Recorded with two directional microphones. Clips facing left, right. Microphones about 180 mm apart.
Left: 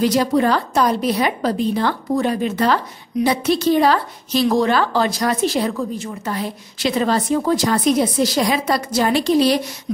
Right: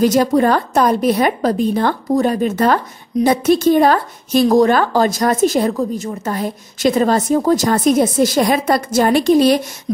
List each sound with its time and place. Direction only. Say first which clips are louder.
0.0 s a woman's voice: right 3 dB; 45° right (ahead or behind)